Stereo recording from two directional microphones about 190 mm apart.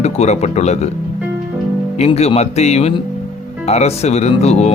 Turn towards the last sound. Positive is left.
turn(degrees=35)  # may be behind; listen again after turning